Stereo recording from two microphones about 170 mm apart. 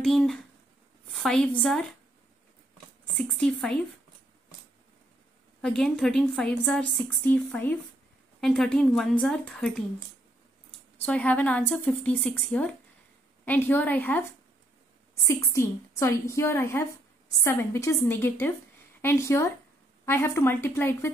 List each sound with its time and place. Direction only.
0.0 s a woman's voice: 5° left (ahead or behind)
3.2 s a woman's voice: 5° left (ahead or behind)
5.6 s a woman's voice: 5° left (ahead or behind)
11.0 s a woman's voice: 10° left (ahead or behind)